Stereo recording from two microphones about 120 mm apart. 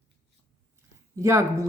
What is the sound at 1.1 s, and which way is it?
Speech, 25° right (ahead or behind).